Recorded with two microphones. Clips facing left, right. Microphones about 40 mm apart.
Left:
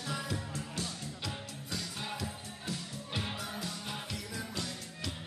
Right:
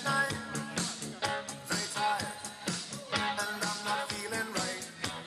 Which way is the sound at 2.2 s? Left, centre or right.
Right.